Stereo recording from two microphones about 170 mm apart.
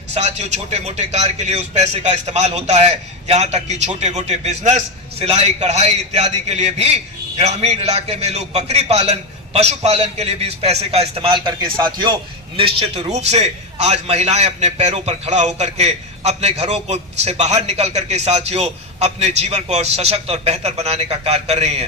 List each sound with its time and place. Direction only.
0.1 s a man's voice: 40° right (ahead or behind); by 12.1 s 25° right (ahead or behind)
12.5 s a man's voice: 35° right (ahead or behind)